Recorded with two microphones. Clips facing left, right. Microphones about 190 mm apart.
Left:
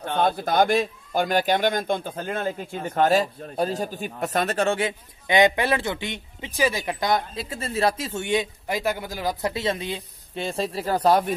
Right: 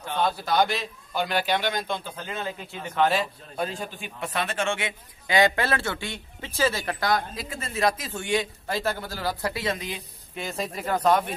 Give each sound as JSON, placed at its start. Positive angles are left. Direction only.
{"t": 0.0, "sound": "a man's voice", "side_deg": 50}
{"t": 5.3, "sound": "a man's voice", "side_deg": 20}